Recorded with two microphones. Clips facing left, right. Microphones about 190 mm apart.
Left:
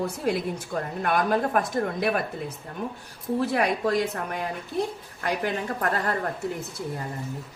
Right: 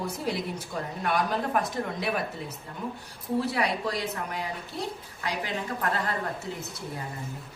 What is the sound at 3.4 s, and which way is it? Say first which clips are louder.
A woman's voice: left 8 dB; 55° left (ahead or behind).